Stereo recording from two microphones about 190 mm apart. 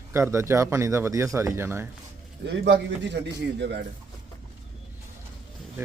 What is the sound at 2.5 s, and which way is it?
A man's voice, 65° right (ahead or behind).